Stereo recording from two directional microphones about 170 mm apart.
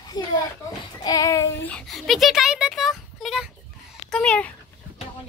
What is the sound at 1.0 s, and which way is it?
Child singing, 20° left (ahead or behind).